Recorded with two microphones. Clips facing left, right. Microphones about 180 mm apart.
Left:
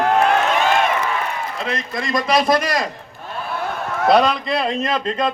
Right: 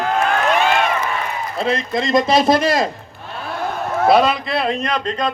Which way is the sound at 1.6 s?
30° right (ahead or behind).